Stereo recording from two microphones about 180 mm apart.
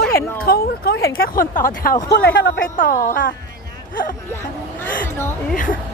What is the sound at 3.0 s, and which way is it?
Speech, 50° left (ahead or behind).